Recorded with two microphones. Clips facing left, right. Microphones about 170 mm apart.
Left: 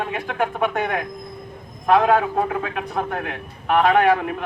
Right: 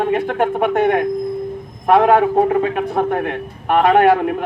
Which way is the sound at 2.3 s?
35° right (ahead or behind).